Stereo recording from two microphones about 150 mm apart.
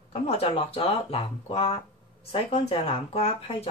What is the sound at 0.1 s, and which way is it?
Speech, 40° left (ahead or behind).